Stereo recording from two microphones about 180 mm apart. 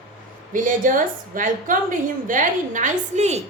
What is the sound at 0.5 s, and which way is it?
A woman's voice, 45° right (ahead or behind).